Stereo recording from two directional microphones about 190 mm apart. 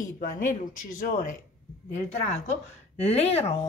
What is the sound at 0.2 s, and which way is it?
Speech, 45° left (ahead or behind).